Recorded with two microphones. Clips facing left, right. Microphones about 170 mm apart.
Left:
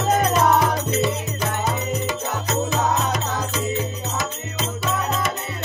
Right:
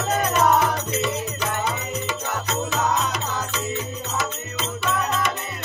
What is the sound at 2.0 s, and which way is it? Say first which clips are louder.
Music: left 2 dB; 40° left (ahead or behind).